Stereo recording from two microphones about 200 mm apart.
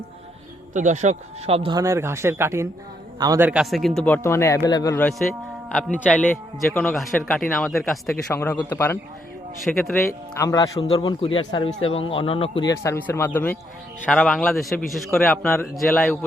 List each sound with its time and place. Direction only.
0.7 s speech: 40° right (ahead or behind)
1.8 s a man's voice: 15° right (ahead or behind)
8.3 s a man's voice: 10° left (ahead or behind)
9.7 s a man's voice: centre (ahead or behind)
10.1 s a man's voice: 15° left (ahead or behind)
10.8 s a man's voice: 25° left (ahead or behind); by 16.1 s centre (ahead or behind)